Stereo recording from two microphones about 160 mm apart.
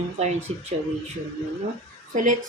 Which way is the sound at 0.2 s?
45° right (ahead or behind).